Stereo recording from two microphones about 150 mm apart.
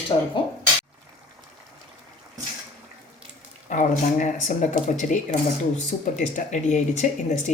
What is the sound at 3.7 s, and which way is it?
Speech, 55° left (ahead or behind).